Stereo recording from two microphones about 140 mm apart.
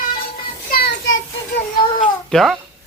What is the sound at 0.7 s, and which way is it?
Child singing, 90° left.